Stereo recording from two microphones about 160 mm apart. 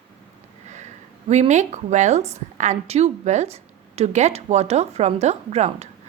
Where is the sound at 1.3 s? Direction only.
45° right (ahead or behind).